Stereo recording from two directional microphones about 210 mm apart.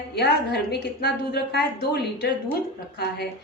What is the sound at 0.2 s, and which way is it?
A woman's voice, 50° left (ahead or behind).